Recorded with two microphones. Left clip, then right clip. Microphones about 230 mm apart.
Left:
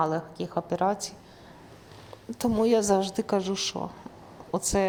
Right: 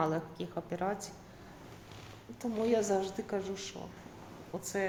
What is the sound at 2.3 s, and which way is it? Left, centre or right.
A woman's voice, left.